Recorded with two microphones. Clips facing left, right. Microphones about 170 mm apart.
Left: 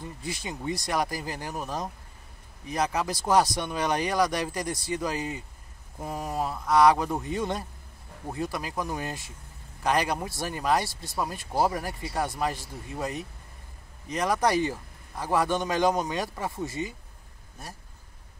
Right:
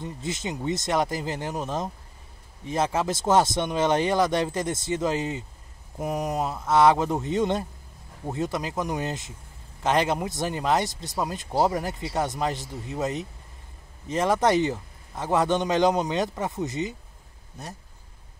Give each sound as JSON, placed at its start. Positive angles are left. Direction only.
{"t": 0.0, "sound": "speech", "side_deg": -20}